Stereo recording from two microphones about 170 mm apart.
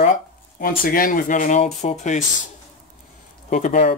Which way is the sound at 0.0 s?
50° left (ahead or behind).